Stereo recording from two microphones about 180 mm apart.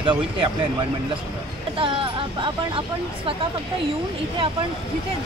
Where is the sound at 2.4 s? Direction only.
30° right (ahead or behind).